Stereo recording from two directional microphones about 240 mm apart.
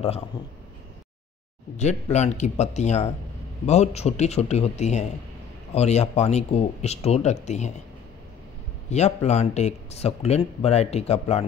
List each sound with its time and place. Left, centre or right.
1.8 s speech: left
8.9 s speech: left